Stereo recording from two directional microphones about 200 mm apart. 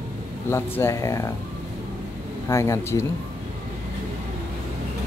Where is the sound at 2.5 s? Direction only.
15° left (ahead or behind).